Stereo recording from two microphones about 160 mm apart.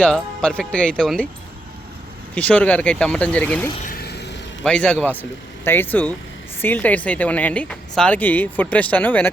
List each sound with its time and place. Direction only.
0.0 s speech: 5° left (ahead or behind)
2.3 s speech: 10° left (ahead or behind)
3.8 s vehicle: 75° left (ahead or behind); by 4.4 s 90° left
4.6 s speech: 5° left (ahead or behind)